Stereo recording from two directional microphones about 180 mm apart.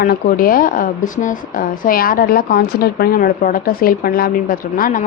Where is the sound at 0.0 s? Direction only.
55° left (ahead or behind).